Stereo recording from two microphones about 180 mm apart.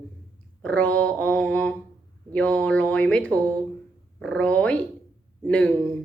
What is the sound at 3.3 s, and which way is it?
Speech, 15° right (ahead or behind).